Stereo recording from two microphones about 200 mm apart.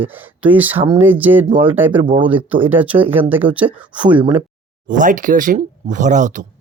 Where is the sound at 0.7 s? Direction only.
25° right (ahead or behind).